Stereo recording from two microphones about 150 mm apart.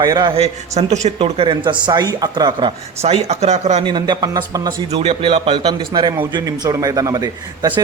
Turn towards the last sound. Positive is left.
turn(degrees=-30)  # may be behind; listen again after turning